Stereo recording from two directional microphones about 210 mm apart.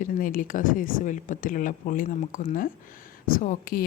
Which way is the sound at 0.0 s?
40° left (ahead or behind).